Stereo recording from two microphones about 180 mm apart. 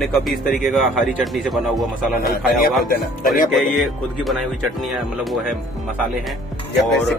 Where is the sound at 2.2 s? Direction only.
55° left (ahead or behind).